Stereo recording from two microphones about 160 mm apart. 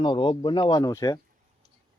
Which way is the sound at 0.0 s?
30° left (ahead or behind).